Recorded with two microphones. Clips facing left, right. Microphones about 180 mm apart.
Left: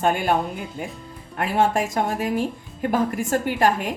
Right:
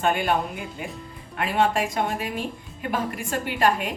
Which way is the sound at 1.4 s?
45° left (ahead or behind).